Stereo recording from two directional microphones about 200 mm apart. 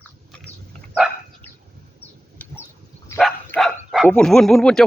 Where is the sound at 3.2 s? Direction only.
5° left (ahead or behind).